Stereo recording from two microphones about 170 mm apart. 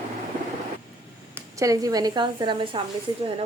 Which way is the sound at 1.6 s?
20° right (ahead or behind).